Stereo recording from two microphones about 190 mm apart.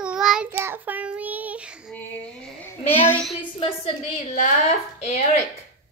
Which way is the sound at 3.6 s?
35° left (ahead or behind).